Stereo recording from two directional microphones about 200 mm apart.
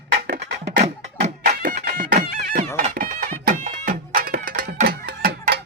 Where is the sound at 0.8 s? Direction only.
35° right (ahead or behind).